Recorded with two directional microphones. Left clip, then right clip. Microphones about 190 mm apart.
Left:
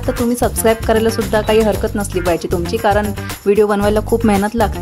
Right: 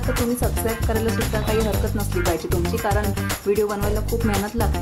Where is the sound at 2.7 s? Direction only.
40° left (ahead or behind).